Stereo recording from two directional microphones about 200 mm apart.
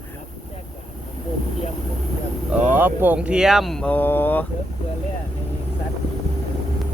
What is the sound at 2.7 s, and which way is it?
Speech, 10° right (ahead or behind).